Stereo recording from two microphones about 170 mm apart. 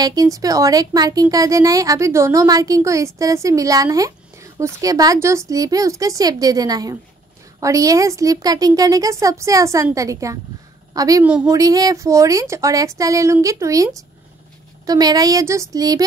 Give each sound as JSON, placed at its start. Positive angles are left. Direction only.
{"t": 0.0, "sound": "a woman's voice", "side_deg": -20}
{"t": 14.9, "sound": "speech", "side_deg": -25}